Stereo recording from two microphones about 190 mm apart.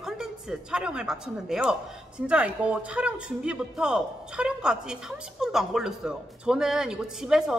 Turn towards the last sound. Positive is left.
turn(degrees=-5)  # may be behind; listen again after turning